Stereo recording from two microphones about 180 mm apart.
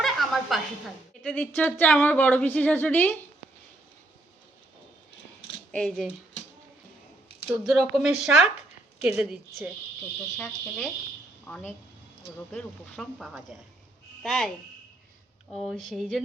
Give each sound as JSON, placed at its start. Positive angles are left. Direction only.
{"t": 0.0, "sound": "a sound", "side_deg": 0}
{"t": 1.2, "sound": "a woman's voice", "side_deg": 5}
{"t": 5.7, "sound": "speech", "side_deg": 5}
{"t": 7.5, "sound": "a woman's voice", "side_deg": 0}
{"t": 10.3, "sound": "speech", "side_deg": 5}
{"t": 15.5, "sound": "speech", "side_deg": 0}